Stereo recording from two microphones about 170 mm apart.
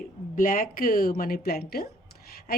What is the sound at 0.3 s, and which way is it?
Speech, 55° left (ahead or behind).